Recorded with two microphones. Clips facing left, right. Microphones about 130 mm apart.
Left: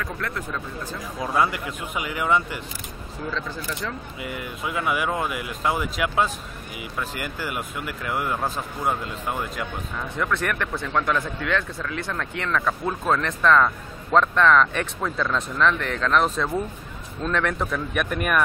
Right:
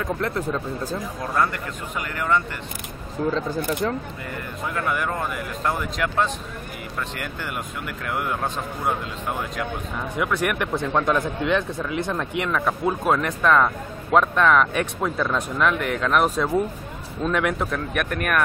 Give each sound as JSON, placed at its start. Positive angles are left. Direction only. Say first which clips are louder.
{"t": 0.0, "sound": "speech", "louder": "right 5 dB", "side_deg": -25}
{"t": 1.2, "sound": "speech", "louder": "left 2 dB", "side_deg": 10}
{"t": 3.3, "sound": "speech", "louder": "right 7 dB", "side_deg": -45}
{"t": 4.3, "sound": "speech", "louder": "left 1 dB", "side_deg": 10}
{"t": 10.1, "sound": "speech", "louder": "right 2 dB", "side_deg": -10}